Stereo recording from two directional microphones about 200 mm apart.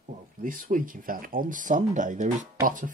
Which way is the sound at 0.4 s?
40° right (ahead or behind).